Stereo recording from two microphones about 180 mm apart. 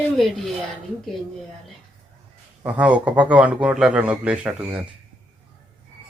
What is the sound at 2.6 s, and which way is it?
Speech, 5° right (ahead or behind).